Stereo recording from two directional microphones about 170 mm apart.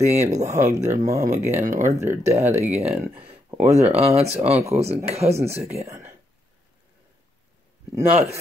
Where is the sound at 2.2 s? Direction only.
40° right (ahead or behind).